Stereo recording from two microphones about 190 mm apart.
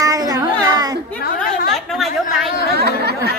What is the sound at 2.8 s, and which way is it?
Chatter, 60° right (ahead or behind).